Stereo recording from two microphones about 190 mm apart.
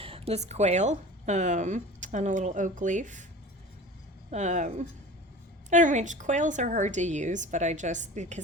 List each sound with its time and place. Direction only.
0.0 s speech: 30° right (ahead or behind)
4.3 s a woman's voice: 40° right (ahead or behind)